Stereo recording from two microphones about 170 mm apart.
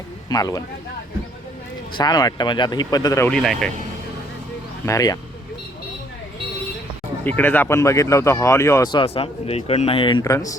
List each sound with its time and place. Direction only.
0.3 s speech: 20° left (ahead or behind)
2.0 s speech: 25° left (ahead or behind)
3.2 s speech: 5° left (ahead or behind)
4.9 s speech: 20° left (ahead or behind)
7.3 s speech: 10° left (ahead or behind)